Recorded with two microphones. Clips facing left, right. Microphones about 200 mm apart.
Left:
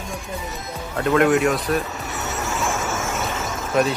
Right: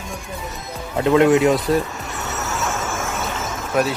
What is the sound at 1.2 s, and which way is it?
Speech, 25° right (ahead or behind).